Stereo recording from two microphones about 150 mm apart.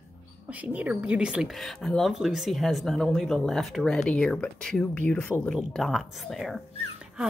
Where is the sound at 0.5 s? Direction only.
10° right (ahead or behind).